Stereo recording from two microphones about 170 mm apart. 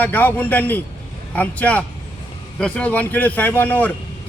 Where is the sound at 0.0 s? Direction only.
10° left (ahead or behind).